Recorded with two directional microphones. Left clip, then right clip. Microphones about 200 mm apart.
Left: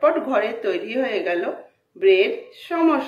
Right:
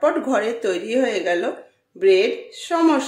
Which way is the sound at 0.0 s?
35° right (ahead or behind).